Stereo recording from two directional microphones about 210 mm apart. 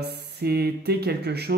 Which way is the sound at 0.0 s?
50° right (ahead or behind).